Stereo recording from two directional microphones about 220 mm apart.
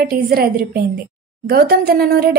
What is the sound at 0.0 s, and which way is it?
A woman's voice, 45° right (ahead or behind).